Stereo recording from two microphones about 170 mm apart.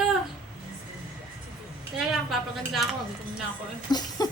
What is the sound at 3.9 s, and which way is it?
Speech, 25° left (ahead or behind).